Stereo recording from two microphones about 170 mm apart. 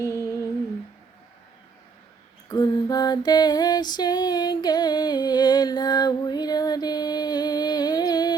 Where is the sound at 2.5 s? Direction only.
25° left (ahead or behind).